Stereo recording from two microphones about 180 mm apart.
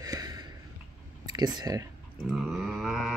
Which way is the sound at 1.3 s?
20° right (ahead or behind).